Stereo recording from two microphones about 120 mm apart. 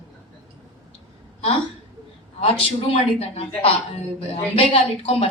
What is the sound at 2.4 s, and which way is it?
Speech, 55° left (ahead or behind).